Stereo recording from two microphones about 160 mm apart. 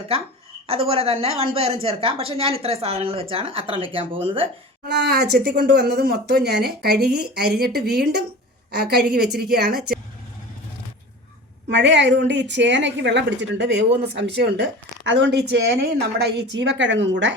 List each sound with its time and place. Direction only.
0.7 s a woman's voice: 35° right (ahead or behind)
4.9 s a woman's voice: 90° right; by 10.0 s 75° right (ahead or behind)
11.7 s a woman's voice: 90° right